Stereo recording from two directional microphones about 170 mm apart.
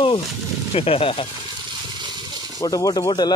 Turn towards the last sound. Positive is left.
turn(degrees=25)  # may be behind; listen again after turning